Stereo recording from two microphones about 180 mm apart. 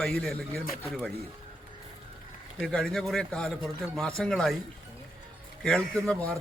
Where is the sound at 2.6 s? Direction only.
5° left (ahead or behind).